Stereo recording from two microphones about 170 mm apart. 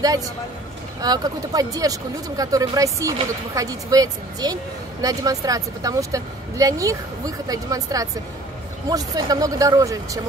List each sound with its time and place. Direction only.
1.0 s speech: 20° right (ahead or behind)